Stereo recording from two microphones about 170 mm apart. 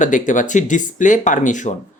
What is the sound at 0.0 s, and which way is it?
Speech, 50° left (ahead or behind).